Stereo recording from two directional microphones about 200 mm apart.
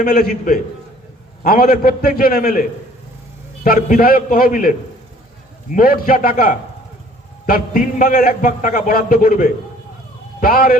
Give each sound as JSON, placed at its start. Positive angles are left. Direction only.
{"t": 0.0, "sound": "a man's voice", "side_deg": 45}
{"t": 5.7, "sound": "a man's voice", "side_deg": 45}